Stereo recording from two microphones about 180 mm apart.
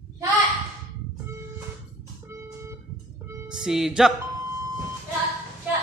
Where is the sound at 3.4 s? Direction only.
5° right (ahead or behind).